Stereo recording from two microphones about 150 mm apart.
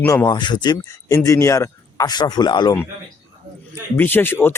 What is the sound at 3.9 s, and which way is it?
Speech, 15° left (ahead or behind).